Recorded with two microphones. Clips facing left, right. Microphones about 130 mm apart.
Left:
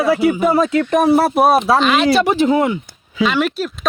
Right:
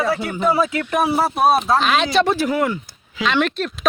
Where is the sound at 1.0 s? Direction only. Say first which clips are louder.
Left 5 dB; 55° left (ahead or behind).